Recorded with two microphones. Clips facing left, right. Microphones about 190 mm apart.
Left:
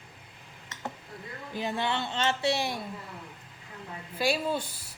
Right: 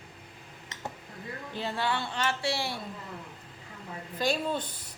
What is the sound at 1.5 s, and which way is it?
Speech, 15° left (ahead or behind).